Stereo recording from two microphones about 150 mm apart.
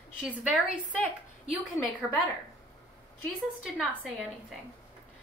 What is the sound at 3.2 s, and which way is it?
Speech, 5° left (ahead or behind).